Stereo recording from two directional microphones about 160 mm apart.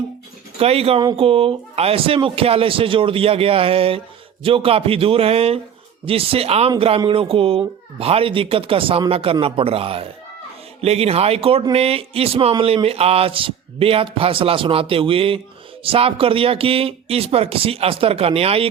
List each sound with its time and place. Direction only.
0.6 s speech: 40° right (ahead or behind)